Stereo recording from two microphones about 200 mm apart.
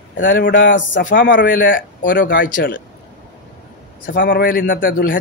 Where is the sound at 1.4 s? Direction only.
45° left (ahead or behind).